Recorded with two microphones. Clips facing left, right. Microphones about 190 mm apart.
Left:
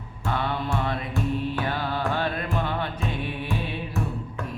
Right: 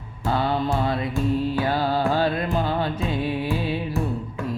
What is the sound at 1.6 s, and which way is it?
Music, 35° right (ahead or behind).